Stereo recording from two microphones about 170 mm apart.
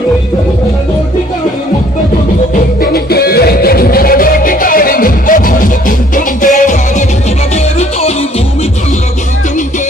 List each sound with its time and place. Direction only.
2.8 s music: 65° left (ahead or behind); by 8.1 s 40° left (ahead or behind)